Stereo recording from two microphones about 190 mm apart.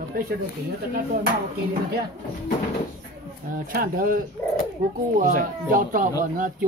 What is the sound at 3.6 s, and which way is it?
Speech, 50° right (ahead or behind).